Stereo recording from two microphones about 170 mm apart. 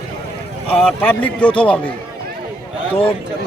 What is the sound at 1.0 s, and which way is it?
Speech, 10° left (ahead or behind).